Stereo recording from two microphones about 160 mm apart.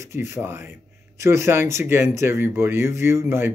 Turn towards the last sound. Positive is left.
turn(degrees=-15)  # may be behind; listen again after turning